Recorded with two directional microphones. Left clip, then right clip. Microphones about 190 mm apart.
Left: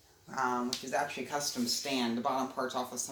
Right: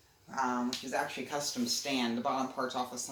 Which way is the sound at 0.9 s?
20° left (ahead or behind).